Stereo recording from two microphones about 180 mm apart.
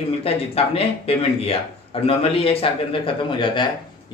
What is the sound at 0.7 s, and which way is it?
A man's voice, 35° left (ahead or behind).